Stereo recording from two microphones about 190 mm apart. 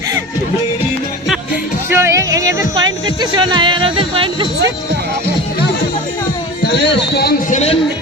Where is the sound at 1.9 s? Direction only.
15° right (ahead or behind).